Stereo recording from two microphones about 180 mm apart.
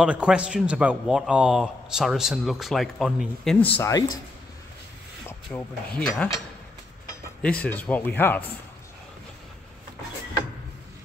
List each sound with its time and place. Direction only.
0.0 s a man's voice: 5° right (ahead or behind)
3.7 s speech: 15° left (ahead or behind)
5.5 s speech: 5° left (ahead or behind)
7.4 s speech: 5° left (ahead or behind)